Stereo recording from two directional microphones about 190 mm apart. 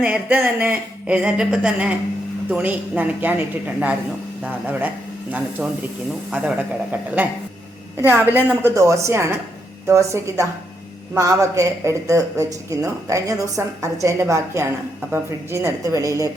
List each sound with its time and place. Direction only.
0.0 s a woman's voice: 10° right (ahead or behind)
6.3 s a woman's voice: 5° right (ahead or behind)